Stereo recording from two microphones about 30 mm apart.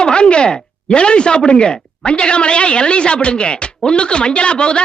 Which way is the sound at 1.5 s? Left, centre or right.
Left.